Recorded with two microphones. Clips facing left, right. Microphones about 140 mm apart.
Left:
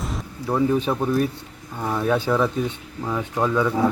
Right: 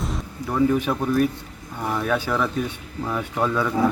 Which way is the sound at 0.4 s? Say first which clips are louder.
Even; 25° left (ahead or behind).